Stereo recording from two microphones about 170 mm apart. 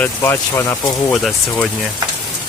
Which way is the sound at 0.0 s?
10° left (ahead or behind).